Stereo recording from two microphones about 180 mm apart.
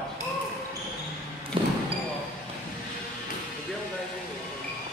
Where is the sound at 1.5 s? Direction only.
30° right (ahead or behind).